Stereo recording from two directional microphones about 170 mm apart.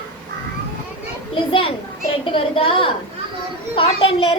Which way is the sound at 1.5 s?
30° left (ahead or behind).